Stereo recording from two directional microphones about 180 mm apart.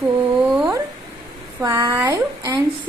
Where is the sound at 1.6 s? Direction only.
20° right (ahead or behind).